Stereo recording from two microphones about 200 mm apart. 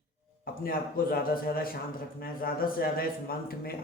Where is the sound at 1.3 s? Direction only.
45° left (ahead or behind).